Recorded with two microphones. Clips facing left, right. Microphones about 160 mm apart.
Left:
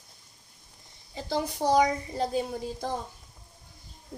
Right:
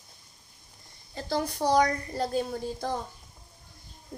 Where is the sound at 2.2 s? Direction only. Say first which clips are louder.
Right 1 dB; 20° left (ahead or behind).